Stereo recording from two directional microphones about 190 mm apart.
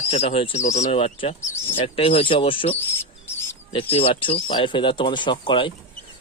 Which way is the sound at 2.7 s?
10° left (ahead or behind).